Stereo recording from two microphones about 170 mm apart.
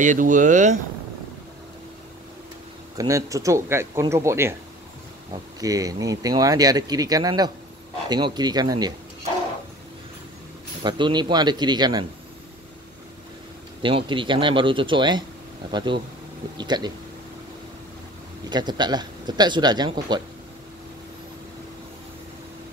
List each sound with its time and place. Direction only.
0.0 s speech: 50° right (ahead or behind)
3.0 s speech: 20° right (ahead or behind)
5.6 s speech: 20° right (ahead or behind)
10.8 s speech: 25° right (ahead or behind)
13.8 s speech: 30° right (ahead or behind)
18.5 s speech: 25° right (ahead or behind)